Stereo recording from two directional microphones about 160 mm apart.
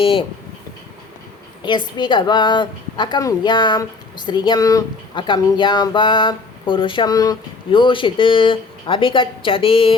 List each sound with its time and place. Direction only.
0.0 s speech: 35° left (ahead or behind)
1.6 s a woman's voice: 30° left (ahead or behind)